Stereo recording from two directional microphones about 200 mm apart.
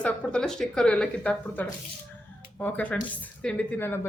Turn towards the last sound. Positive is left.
turn(degrees=10)  # may be behind; listen again after turning